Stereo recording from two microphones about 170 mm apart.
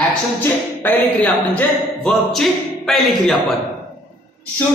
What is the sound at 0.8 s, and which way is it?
Speech, 10° left (ahead or behind).